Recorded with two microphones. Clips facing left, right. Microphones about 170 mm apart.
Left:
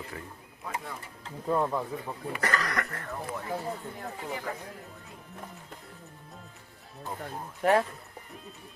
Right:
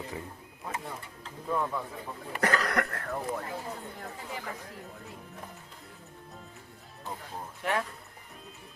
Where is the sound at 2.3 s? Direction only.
60° right (ahead or behind).